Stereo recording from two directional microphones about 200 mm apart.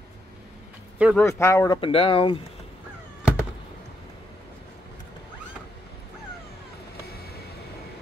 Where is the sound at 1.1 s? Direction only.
15° left (ahead or behind).